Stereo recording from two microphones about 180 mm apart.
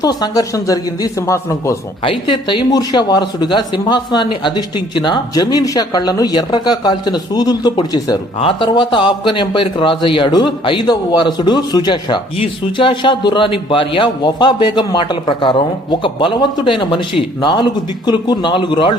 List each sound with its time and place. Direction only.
0.0 s a man's voice: 20° left (ahead or behind)
2.0 s a man's voice: 30° left (ahead or behind)